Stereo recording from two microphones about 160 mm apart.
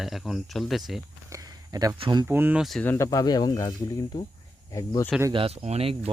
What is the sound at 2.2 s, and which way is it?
Speech, 10° right (ahead or behind).